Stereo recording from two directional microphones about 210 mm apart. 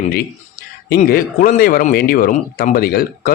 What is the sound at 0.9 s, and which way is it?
A man's voice, 45° left (ahead or behind).